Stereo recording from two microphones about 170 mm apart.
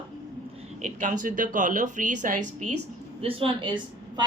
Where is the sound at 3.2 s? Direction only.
35° right (ahead or behind).